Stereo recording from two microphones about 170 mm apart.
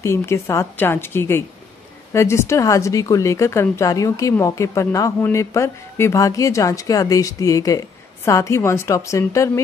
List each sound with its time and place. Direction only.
0.0 s a woman's voice: 15° left (ahead or behind)